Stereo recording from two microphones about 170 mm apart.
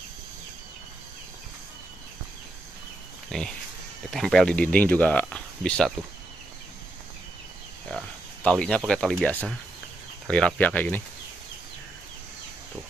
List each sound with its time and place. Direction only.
3.3 s speech: 5° left (ahead or behind)
8.5 s speech: 5° left (ahead or behind)